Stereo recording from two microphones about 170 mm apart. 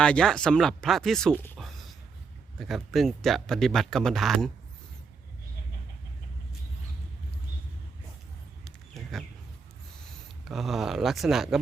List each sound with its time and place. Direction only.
0.0 s speech: 5° left (ahead or behind)
1.5 s a sound: centre (ahead or behind)
2.6 s speech: centre (ahead or behind)
8.9 s bird: centre (ahead or behind)
10.4 s speech: centre (ahead or behind)